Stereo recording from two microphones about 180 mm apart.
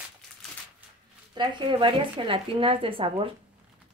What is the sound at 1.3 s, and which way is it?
Speech, 25° right (ahead or behind).